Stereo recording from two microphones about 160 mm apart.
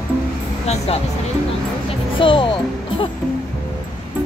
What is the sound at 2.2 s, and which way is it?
Speech, 30° left (ahead or behind).